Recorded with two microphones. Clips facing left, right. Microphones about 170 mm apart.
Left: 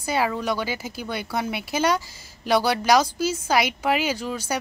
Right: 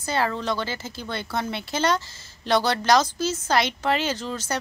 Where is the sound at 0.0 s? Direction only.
10° left (ahead or behind).